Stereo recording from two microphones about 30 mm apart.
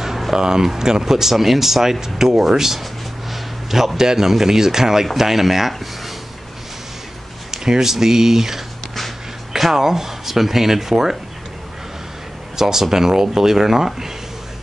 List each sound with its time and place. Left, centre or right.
0.3 s a man's voice: centre
7.5 s speech: centre
12.5 s speech: centre